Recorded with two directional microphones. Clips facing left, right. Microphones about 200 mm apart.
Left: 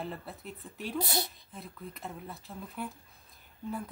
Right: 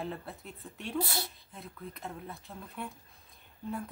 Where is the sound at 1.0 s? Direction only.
20° left (ahead or behind).